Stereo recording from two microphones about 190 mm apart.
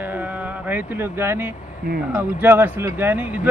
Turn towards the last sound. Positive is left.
turn(degrees=-10)  # may be behind; listen again after turning